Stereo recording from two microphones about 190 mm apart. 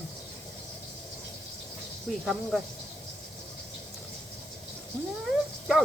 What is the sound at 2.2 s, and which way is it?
Speech, centre (ahead or behind).